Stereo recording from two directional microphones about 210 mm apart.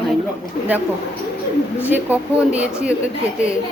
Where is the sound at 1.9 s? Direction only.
5° right (ahead or behind).